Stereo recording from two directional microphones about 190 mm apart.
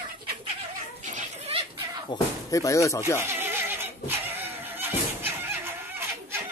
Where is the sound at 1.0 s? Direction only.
35° right (ahead or behind).